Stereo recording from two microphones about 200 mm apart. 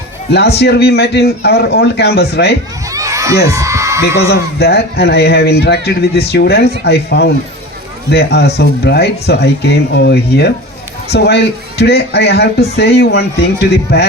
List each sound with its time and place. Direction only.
0.3 s speech: 55° left (ahead or behind)
2.9 s children shouting: 15° right (ahead or behind)
3.5 s a sound: 15° right (ahead or behind)
4.2 s speech: 55° left (ahead or behind)